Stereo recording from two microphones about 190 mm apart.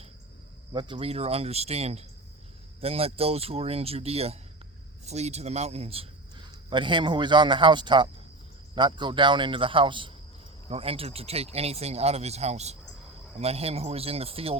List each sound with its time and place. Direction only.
0.7 s a man's voice: 25° right (ahead or behind)